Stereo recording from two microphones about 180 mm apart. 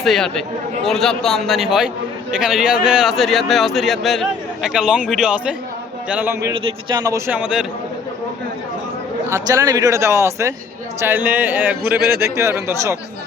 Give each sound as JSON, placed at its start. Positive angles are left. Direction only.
{"t": 0.0, "sound": "a man's voice", "side_deg": 0}
{"t": 9.3, "sound": "speech", "side_deg": -20}